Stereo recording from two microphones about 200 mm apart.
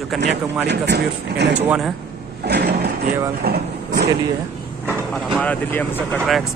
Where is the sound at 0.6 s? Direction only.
60° right (ahead or behind).